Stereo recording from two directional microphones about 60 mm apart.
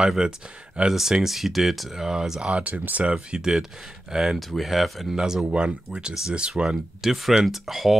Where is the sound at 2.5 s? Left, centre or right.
Right.